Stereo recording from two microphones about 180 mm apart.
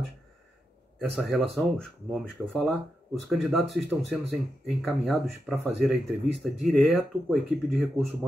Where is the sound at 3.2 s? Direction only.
Centre (ahead or behind).